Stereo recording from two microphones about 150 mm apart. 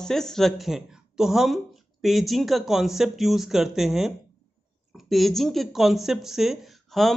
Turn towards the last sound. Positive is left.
turn(degrees=0)  # may be behind; listen again after turning